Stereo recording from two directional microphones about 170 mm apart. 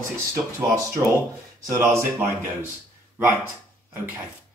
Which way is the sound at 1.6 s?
15° right (ahead or behind).